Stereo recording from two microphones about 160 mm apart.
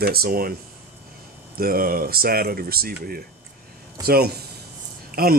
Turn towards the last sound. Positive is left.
turn(degrees=-70)  # may be behind; listen again after turning